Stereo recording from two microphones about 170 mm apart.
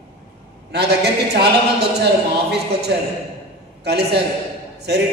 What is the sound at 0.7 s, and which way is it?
A man's voice, 75° right (ahead or behind).